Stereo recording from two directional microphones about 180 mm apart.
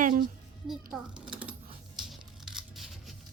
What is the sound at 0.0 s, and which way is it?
Music, 50° right (ahead or behind).